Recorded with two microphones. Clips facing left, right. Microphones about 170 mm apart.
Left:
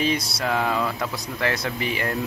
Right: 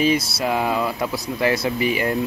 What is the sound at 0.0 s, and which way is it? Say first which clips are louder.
Speech: right 5 dB; 5° right (ahead or behind).